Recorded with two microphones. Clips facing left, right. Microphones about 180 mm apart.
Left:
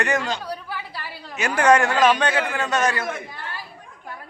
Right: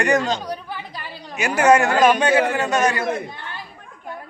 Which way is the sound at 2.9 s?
25° right (ahead or behind).